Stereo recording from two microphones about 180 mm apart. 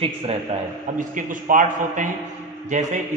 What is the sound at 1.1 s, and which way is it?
A man's voice, 50° right (ahead or behind).